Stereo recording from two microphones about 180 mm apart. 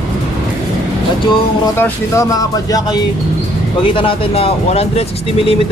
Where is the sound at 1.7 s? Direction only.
15° left (ahead or behind); by 5.5 s 35° left (ahead or behind).